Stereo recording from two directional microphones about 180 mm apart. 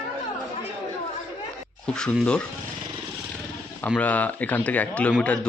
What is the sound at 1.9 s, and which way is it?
Speech, 5° left (ahead or behind).